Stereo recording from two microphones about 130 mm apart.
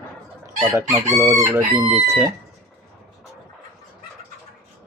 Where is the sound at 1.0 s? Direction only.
20° right (ahead or behind).